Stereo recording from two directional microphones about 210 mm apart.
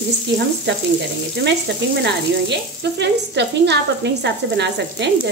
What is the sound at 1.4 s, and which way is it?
Speech, 55° right (ahead or behind).